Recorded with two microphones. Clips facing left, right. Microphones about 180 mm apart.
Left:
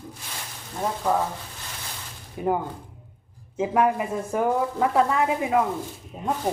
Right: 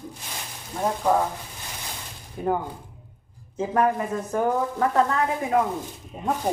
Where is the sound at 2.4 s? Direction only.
10° left (ahead or behind).